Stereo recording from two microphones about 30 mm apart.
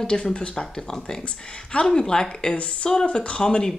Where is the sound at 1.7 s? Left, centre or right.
Left.